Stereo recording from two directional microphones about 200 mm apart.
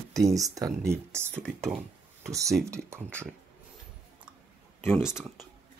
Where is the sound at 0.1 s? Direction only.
15° right (ahead or behind).